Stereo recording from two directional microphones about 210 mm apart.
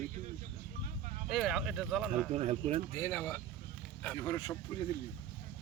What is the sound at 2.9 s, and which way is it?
Speech, 15° left (ahead or behind).